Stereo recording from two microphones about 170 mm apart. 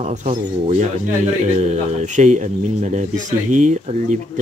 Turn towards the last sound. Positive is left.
turn(degrees=-45)  # may be behind; listen again after turning